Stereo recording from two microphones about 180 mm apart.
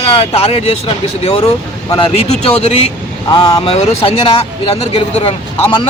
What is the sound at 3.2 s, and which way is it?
Speech, 20° left (ahead or behind).